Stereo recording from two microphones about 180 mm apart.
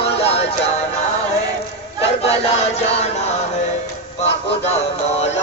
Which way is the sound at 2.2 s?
35° left (ahead or behind).